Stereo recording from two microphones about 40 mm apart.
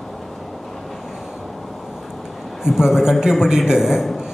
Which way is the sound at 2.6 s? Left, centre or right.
Centre.